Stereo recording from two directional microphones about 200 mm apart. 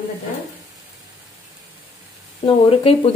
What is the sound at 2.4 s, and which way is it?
Speech, 30° left (ahead or behind).